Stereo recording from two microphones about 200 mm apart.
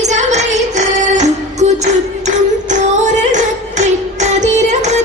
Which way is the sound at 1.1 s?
35° right (ahead or behind).